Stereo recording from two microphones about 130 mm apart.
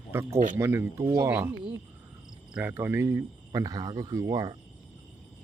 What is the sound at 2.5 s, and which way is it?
Speech, 15° right (ahead or behind).